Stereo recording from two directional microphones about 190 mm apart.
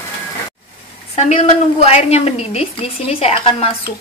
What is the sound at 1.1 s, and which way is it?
A woman's voice, 35° left (ahead or behind).